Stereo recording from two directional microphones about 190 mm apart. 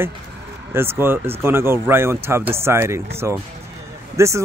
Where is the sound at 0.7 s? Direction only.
10° right (ahead or behind).